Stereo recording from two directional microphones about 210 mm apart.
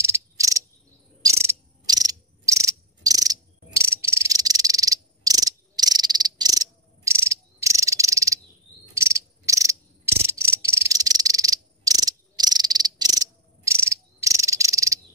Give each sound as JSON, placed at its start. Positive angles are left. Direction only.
{"t": 0.0, "sound": "cricket", "side_deg": -15}